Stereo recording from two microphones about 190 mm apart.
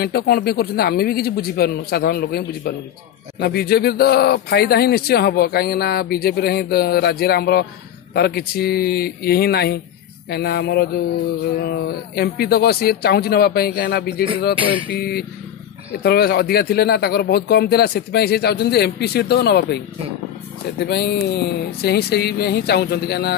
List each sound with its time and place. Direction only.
0.0 s a man's voice: 55° left (ahead or behind)
14.6 s a sound: 25° right (ahead or behind)
14.9 s speech: 55° left (ahead or behind)
20.8 s speech: 60° left (ahead or behind)